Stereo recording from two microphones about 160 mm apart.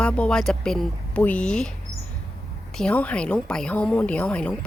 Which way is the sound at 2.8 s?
10° left (ahead or behind).